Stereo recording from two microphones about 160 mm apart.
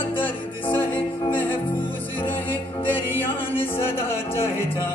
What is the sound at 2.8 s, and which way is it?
Music, 10° left (ahead or behind).